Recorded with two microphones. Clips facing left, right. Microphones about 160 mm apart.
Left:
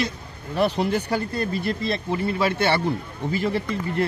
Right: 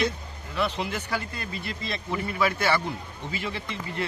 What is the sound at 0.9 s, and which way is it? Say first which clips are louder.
Speech: left 7 dB; 35° left (ahead or behind).